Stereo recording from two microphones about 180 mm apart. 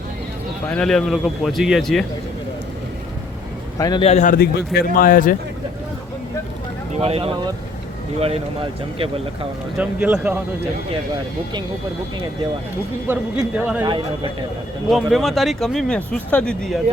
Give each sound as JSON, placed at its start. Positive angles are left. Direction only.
{"t": 0.7, "sound": "speech", "side_deg": 5}
{"t": 3.8, "sound": "speech", "side_deg": 20}
{"t": 4.0, "sound": "a man's voice", "side_deg": 40}
{"t": 7.0, "sound": "speech", "side_deg": -35}
{"t": 9.7, "sound": "speech", "side_deg": -10}
{"t": 13.1, "sound": "speech", "side_deg": -5}
{"t": 14.8, "sound": "speech", "side_deg": 0}